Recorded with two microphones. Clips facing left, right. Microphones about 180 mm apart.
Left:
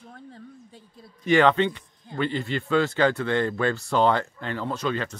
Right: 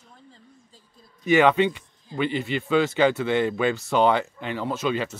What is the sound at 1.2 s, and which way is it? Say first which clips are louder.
Speech: right 1 dB; 10° right (ahead or behind).